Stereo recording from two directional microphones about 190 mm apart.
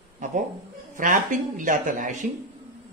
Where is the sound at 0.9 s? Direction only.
40° right (ahead or behind).